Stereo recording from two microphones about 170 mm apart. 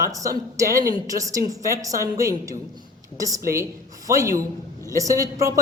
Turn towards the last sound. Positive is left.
turn(degrees=-20)  # may be behind; listen again after turning